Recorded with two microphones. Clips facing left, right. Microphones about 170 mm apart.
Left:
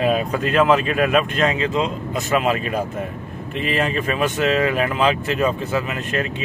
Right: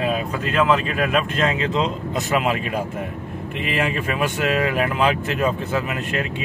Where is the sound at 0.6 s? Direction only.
15° left (ahead or behind).